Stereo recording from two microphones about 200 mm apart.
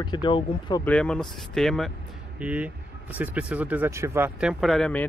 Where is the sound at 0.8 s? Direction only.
5° left (ahead or behind).